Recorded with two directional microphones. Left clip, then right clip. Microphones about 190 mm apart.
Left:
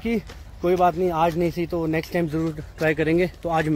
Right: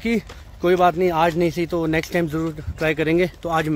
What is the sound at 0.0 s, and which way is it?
Speech, 35° right (ahead or behind).